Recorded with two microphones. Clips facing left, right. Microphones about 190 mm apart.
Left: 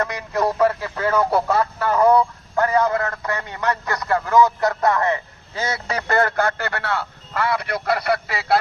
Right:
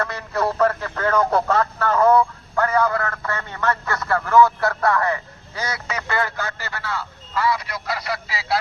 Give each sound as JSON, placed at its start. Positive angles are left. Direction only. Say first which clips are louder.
{"t": 0.0, "sound": "speech", "louder": "left 2 dB", "side_deg": 15}